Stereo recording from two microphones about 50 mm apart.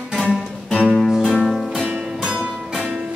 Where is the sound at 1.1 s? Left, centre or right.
Centre.